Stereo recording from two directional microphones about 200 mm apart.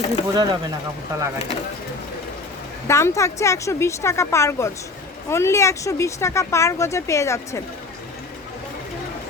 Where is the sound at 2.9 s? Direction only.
15° left (ahead or behind).